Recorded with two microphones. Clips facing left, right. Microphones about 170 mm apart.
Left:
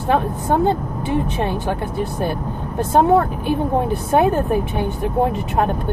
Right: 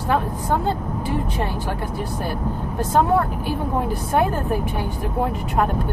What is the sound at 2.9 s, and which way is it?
Speech, 25° left (ahead or behind).